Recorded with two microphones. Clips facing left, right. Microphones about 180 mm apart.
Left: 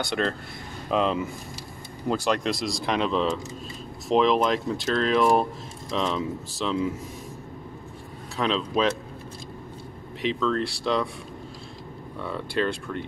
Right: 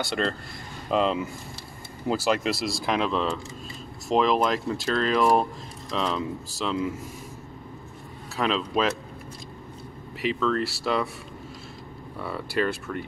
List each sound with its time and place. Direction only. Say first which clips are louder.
0.0 s speech: left 1 dB; centre (ahead or behind)
8.4 s speech: even; 5° right (ahead or behind)
10.2 s speech: even; 5° right (ahead or behind)
12.2 s speech: even; 5° right (ahead or behind)